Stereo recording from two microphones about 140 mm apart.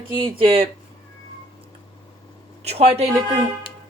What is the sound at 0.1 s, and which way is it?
Speech, 40° right (ahead or behind).